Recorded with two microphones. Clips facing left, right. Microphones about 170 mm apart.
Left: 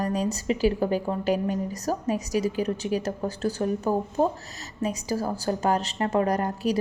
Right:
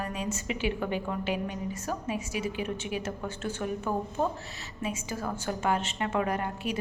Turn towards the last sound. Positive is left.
turn(degrees=40)  # may be behind; listen again after turning